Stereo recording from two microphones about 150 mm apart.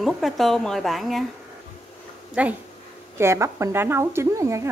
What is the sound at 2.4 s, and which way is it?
Speech, 10° right (ahead or behind).